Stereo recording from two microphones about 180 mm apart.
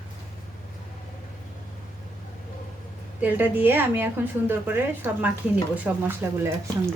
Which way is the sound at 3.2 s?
10° right (ahead or behind).